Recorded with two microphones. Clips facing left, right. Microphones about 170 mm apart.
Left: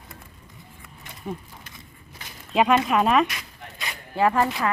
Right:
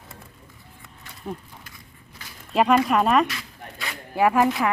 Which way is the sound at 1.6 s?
20° left (ahead or behind).